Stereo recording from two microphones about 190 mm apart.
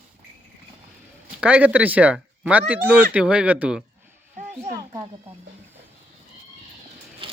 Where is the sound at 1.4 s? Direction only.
5° right (ahead or behind).